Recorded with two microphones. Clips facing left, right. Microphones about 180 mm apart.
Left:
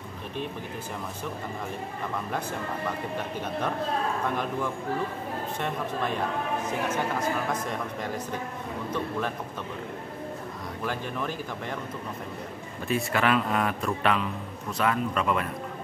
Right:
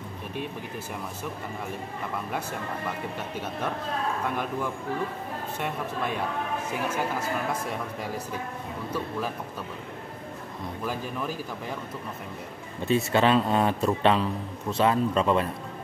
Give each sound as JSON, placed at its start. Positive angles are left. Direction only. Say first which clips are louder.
{"t": 10.9, "sound": "speech", "louder": "even", "side_deg": -5}
{"t": 12.8, "sound": "a man's voice", "louder": "right 4 dB", "side_deg": -25}